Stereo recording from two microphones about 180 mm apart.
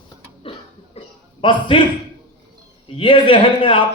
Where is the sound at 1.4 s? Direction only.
30° left (ahead or behind).